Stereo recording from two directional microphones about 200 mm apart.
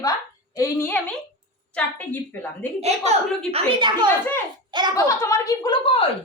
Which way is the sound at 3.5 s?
20° right (ahead or behind).